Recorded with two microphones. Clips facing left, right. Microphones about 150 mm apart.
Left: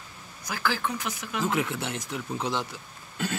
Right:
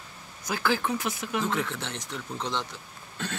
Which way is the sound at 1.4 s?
10° left (ahead or behind).